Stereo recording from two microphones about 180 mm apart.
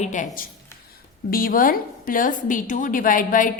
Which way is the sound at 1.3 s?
50° left (ahead or behind).